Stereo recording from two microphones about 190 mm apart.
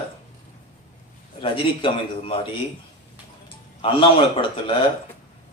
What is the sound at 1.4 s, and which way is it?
A man's voice, 25° left (ahead or behind).